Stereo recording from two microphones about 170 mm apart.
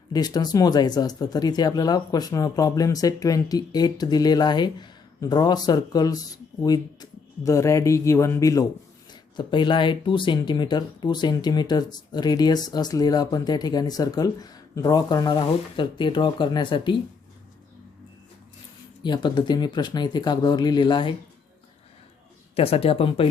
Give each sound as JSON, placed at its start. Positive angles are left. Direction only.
{"t": 0.1, "sound": "speech", "side_deg": 25}
{"t": 19.0, "sound": "speech", "side_deg": 25}
{"t": 22.5, "sound": "speech", "side_deg": 35}